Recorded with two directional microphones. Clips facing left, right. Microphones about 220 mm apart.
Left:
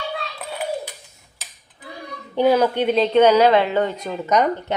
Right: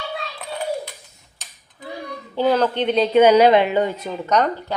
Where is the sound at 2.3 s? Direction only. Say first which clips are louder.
Left 2 dB; 15° left (ahead or behind); by 4.2 s 5° right (ahead or behind).